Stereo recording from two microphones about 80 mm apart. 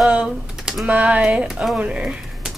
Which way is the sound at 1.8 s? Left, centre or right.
Centre.